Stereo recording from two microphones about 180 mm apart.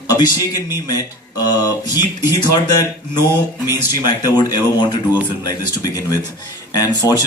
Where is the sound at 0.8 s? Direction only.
20° left (ahead or behind).